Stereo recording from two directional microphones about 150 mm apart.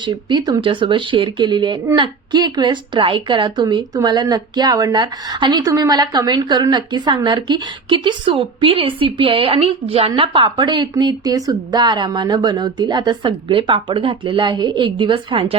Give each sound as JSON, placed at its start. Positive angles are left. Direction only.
{"t": 0.0, "sound": "a woman's voice", "side_deg": -30}